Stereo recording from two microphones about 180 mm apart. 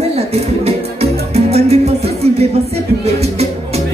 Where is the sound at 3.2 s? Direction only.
35° right (ahead or behind).